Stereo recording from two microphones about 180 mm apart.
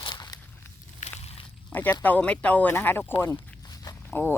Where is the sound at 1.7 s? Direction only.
10° left (ahead or behind).